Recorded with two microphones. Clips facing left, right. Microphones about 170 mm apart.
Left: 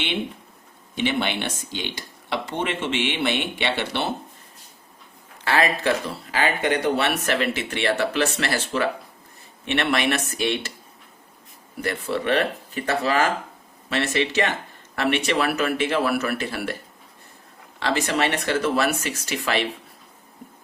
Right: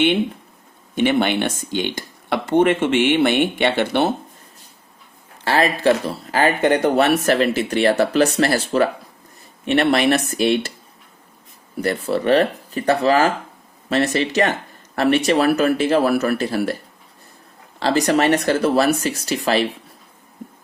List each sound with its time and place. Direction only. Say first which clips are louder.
0.9 s speech: right 7 dB; 50° right (ahead or behind)
5.5 s speech: right 5 dB; 35° right (ahead or behind)
11.8 s speech: right 5 dB; 35° right (ahead or behind)
17.7 s speech: right 6 dB; 35° right (ahead or behind)